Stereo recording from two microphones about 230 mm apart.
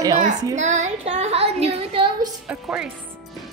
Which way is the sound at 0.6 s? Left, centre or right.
Right.